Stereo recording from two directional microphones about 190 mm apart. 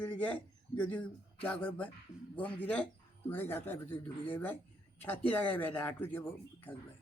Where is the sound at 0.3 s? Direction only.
10° left (ahead or behind).